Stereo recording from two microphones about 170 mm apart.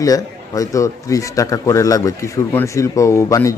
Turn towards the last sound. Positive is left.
turn(degrees=20)  # may be behind; listen again after turning